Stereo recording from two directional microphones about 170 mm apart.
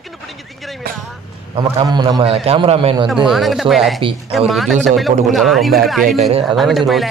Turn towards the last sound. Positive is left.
turn(degrees=0)  # may be behind; listen again after turning